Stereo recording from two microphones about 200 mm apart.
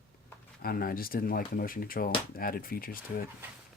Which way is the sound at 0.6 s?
45° left (ahead or behind).